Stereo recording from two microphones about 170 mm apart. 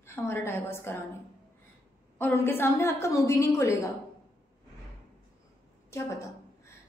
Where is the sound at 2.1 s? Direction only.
10° left (ahead or behind).